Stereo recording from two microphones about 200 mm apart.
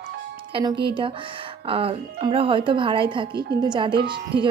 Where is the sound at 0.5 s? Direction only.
20° right (ahead or behind).